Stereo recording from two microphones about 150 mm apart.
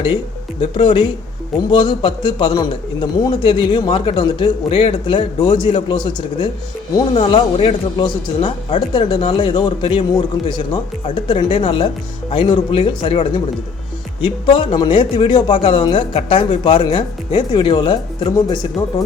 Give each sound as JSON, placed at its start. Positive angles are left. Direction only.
{"t": 0.6, "sound": "a man's voice", "side_deg": 35}